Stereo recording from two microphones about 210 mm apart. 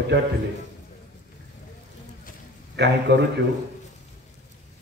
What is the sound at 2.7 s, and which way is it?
Speech, 55° right (ahead or behind).